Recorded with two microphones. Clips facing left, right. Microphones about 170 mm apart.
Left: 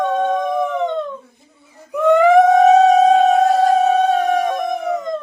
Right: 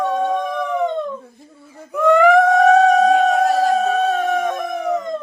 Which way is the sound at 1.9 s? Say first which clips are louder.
Left 1 dB; 20° left (ahead or behind).